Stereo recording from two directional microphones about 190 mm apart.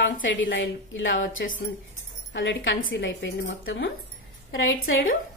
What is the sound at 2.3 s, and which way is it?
A woman's voice, 75° left (ahead or behind).